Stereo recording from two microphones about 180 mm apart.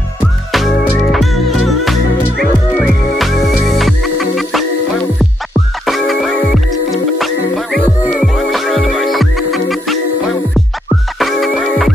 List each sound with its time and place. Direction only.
1.1 s music: centre (ahead or behind)
5.9 s music: centre (ahead or behind)